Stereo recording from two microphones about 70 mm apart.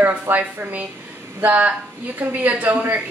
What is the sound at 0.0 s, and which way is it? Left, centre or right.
A woman's voice, right.